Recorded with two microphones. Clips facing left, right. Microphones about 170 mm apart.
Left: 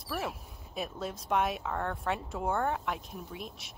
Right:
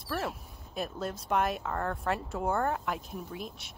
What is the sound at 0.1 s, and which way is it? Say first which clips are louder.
Speech: right 2 dB; centre (ahead or behind).